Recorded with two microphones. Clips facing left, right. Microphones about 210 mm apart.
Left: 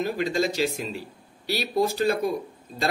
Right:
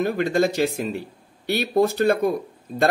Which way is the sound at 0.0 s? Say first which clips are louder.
Right 4 dB; 55° right (ahead or behind).